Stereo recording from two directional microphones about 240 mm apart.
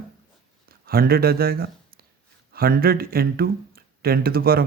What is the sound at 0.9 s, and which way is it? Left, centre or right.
Speech, right.